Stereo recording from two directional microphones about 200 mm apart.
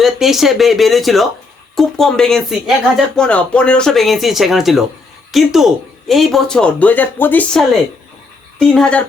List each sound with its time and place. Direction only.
0.0 s speech: centre (ahead or behind)